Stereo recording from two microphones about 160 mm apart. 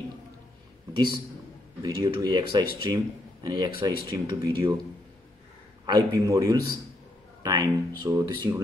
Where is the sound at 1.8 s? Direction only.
25° right (ahead or behind).